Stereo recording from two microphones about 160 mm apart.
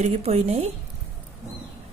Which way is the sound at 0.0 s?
45° right (ahead or behind).